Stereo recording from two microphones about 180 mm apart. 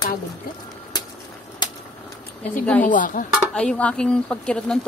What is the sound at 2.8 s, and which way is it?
Speech, 45° left (ahead or behind).